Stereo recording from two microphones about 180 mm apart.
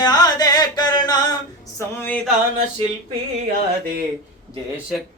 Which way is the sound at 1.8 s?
10° left (ahead or behind).